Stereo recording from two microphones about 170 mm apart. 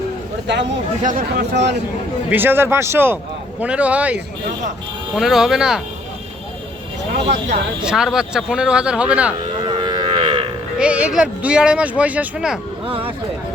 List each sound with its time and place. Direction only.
0.5 s speech: 90° right
1.0 s speech: 55° right (ahead or behind)
2.3 s speech: 10° right (ahead or behind)
7.9 s speech: 5° right (ahead or behind)
9.6 s cattle: 30° right (ahead or behind)
10.8 s speech: 5° right (ahead or behind)